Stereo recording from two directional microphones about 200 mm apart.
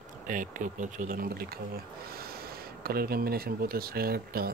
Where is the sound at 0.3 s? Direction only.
40° right (ahead or behind).